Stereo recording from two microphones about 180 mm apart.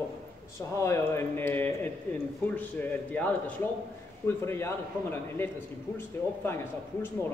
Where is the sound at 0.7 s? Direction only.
15° left (ahead or behind).